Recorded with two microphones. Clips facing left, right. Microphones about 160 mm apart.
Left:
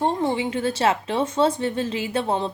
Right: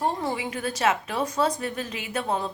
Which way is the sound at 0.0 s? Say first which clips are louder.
Left 5 dB; 25° left (ahead or behind).